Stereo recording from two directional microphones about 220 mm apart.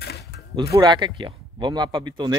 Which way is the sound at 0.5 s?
20° right (ahead or behind).